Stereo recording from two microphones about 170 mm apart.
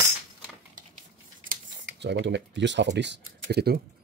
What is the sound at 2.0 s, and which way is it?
Speech, 90° right.